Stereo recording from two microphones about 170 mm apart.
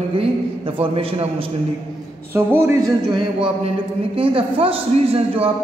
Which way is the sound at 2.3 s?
15° right (ahead or behind).